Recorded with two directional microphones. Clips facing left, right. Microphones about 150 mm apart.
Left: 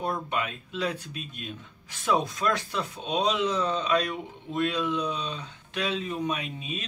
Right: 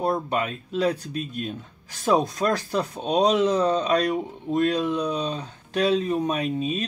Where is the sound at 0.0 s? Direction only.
40° right (ahead or behind).